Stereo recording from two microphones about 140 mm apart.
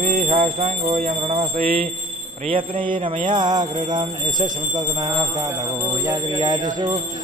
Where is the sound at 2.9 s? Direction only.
70° right (ahead or behind).